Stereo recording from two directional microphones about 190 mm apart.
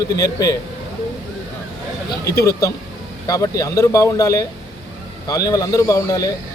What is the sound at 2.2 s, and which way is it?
Speech, 15° left (ahead or behind).